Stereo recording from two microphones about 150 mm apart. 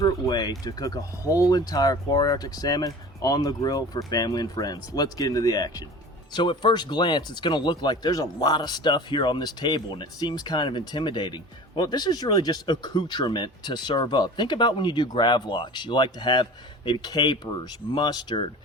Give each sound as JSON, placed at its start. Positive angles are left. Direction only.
{"t": 0.0, "sound": "speech", "side_deg": 25}